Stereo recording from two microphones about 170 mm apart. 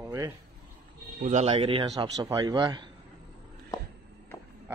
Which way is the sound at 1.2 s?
40° right (ahead or behind).